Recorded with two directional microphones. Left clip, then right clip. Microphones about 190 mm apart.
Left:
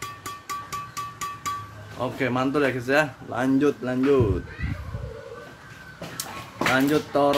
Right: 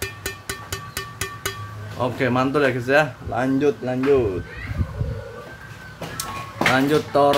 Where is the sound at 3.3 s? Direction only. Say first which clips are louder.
Right 2 dB; 10° left (ahead or behind).